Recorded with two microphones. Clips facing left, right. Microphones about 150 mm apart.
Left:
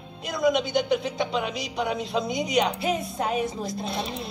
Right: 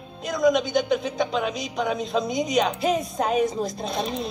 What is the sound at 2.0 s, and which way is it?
Speech, 20° right (ahead or behind).